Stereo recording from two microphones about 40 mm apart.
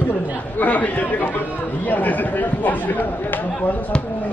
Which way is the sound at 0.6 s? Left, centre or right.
Left.